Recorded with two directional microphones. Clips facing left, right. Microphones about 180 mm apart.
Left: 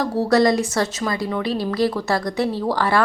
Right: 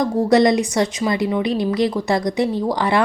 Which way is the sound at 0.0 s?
20° right (ahead or behind).